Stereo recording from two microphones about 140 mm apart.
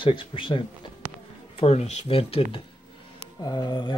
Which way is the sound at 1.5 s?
45° left (ahead or behind).